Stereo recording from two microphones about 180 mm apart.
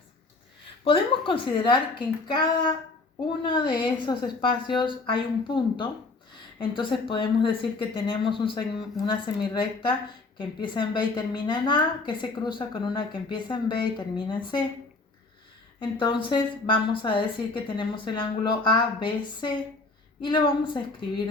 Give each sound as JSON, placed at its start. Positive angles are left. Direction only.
{"t": 0.9, "sound": "a woman's voice", "side_deg": 30}
{"t": 15.8, "sound": "a woman's voice", "side_deg": 25}